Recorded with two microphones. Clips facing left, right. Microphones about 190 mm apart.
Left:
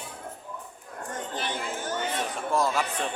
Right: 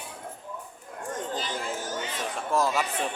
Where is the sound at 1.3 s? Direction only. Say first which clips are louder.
Left 2 dB; 60° left (ahead or behind).